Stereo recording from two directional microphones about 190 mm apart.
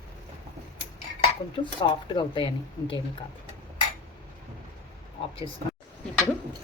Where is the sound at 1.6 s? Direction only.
25° left (ahead or behind).